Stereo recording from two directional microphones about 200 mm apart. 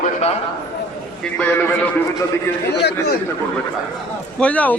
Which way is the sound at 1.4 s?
10° left (ahead or behind).